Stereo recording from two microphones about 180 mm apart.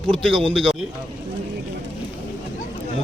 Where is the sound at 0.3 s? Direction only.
30° right (ahead or behind).